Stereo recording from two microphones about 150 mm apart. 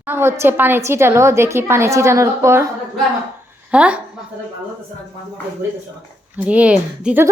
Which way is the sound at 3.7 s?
10° right (ahead or behind).